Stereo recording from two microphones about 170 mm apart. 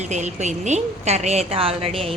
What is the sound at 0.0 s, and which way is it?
A woman's voice, 45° right (ahead or behind).